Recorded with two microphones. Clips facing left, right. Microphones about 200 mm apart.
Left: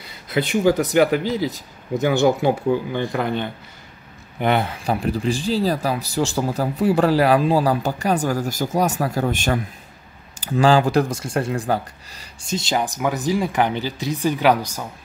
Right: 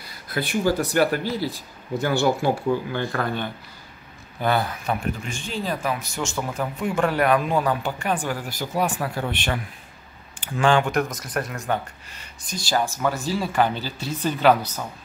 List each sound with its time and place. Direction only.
0.0 s speech: 20° left (ahead or behind)